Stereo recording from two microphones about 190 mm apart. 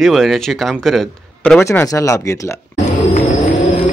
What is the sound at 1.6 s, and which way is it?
Speech, 15° left (ahead or behind).